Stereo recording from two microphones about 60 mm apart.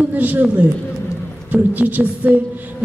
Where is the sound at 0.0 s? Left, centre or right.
Right.